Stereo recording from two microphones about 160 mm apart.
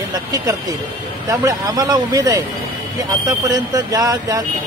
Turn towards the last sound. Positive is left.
turn(degrees=-20)  # may be behind; listen again after turning